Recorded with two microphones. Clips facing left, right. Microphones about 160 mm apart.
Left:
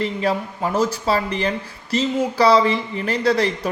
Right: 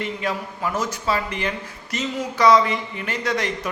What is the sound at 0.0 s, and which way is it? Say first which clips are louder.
A man's voice: left 5 dB; 35° left (ahead or behind).